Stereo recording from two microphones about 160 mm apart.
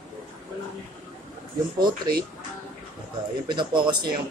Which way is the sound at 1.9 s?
70° right (ahead or behind).